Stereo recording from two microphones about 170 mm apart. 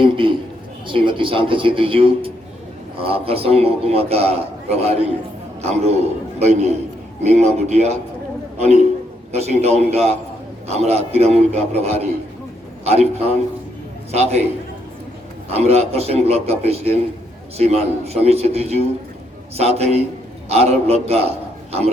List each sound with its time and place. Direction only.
0.0 s a sound: 30° right (ahead or behind)
0.9 s a man's voice: 30° right (ahead or behind)
15.5 s a man's voice: 40° right (ahead or behind)